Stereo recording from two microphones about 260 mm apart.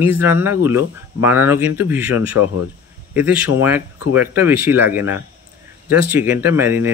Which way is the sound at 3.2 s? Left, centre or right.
Centre.